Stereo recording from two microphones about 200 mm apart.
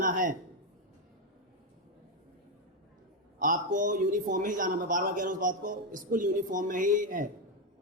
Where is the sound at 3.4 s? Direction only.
40° right (ahead or behind).